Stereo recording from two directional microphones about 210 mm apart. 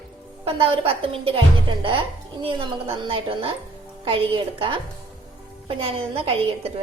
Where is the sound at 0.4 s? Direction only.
25° right (ahead or behind).